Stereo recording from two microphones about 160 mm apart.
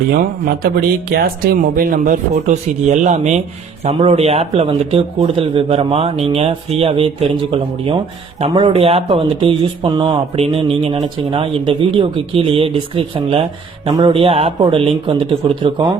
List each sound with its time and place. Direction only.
0.6 s speech: 70° right (ahead or behind)
2.3 s speech: 45° right (ahead or behind)